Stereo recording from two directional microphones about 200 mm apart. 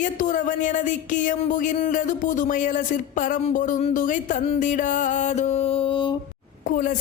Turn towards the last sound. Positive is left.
turn(degrees=40)  # may be behind; listen again after turning